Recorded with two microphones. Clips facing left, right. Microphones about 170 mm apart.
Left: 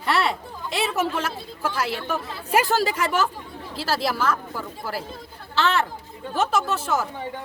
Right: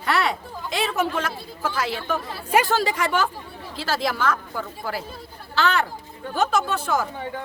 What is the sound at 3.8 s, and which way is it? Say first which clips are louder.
A woman's voice: even; 5° left (ahead or behind).